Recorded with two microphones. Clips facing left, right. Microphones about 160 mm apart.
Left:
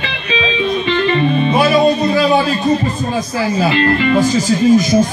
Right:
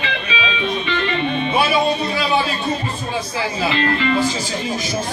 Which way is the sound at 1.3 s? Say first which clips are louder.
Left 4 dB; 40° left (ahead or behind).